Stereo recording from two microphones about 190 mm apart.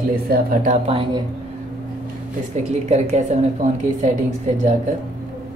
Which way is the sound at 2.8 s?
35° right (ahead or behind).